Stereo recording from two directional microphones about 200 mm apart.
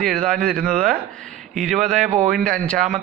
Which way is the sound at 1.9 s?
40° right (ahead or behind).